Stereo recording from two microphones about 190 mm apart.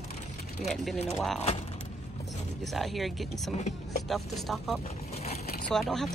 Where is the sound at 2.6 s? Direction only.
Centre (ahead or behind).